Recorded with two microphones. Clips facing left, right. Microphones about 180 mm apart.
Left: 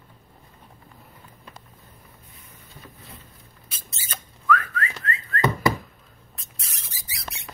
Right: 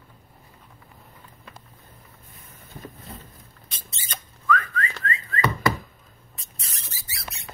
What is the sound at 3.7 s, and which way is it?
Whistling, 5° left (ahead or behind).